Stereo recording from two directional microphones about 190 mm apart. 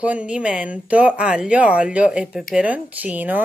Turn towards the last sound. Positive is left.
turn(degrees=-10)  # may be behind; listen again after turning